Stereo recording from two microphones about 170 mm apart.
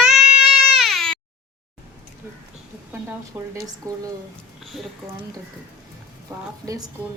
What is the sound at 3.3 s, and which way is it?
Speech, 15° right (ahead or behind).